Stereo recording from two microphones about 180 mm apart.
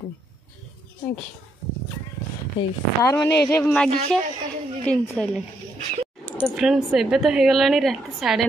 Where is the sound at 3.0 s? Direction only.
15° left (ahead or behind).